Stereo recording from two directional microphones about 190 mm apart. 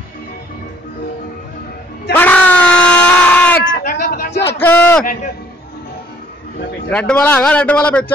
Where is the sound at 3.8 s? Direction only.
45° left (ahead or behind); by 4.5 s 65° left (ahead or behind).